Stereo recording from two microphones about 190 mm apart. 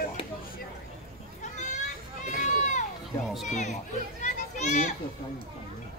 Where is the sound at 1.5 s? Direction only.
40° left (ahead or behind).